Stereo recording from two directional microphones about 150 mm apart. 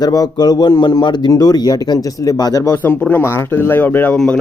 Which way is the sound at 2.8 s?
10° left (ahead or behind).